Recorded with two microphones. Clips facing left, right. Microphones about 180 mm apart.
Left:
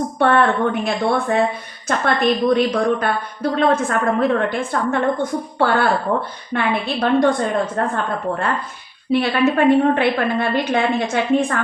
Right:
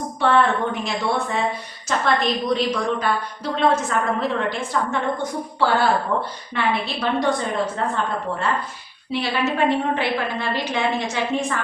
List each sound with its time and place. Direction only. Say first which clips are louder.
0.2 s a woman's voice: left 3 dB; 55° left (ahead or behind)